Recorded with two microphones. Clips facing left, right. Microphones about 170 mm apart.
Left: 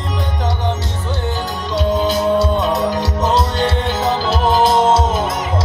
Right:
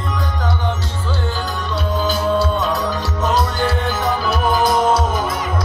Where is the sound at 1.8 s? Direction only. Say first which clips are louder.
Left 5 dB; 20° left (ahead or behind).